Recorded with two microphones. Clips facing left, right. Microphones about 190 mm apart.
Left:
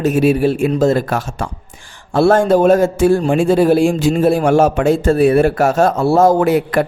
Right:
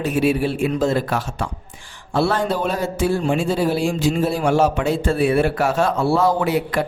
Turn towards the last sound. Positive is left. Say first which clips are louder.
# left 6 dB
turn(degrees=50)  # may be behind; listen again after turning